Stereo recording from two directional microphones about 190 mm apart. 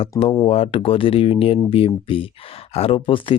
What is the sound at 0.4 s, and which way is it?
Speech, 30° left (ahead or behind).